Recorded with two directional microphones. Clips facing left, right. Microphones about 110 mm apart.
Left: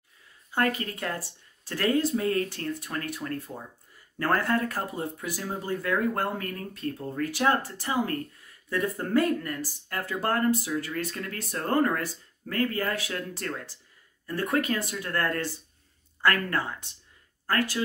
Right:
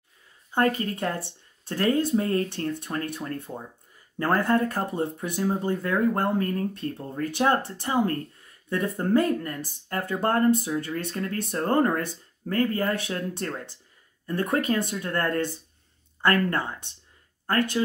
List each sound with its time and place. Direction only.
0.5 s speech: 25° right (ahead or behind)